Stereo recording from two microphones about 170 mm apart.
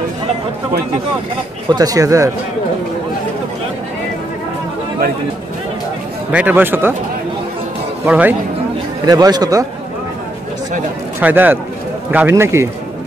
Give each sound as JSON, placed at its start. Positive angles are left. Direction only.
{"t": 1.7, "sound": "speech", "side_deg": -20}
{"t": 6.3, "sound": "speech", "side_deg": -10}
{"t": 8.0, "sound": "speech", "side_deg": -10}
{"t": 9.0, "sound": "speech", "side_deg": -25}
{"t": 11.1, "sound": "speech", "side_deg": -10}